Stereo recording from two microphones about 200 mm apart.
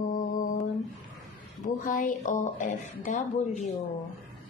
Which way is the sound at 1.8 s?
40° left (ahead or behind).